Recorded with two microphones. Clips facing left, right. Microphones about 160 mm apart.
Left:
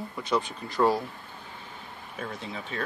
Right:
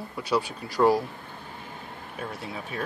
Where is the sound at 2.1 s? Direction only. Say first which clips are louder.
Right 1 dB; 10° right (ahead or behind).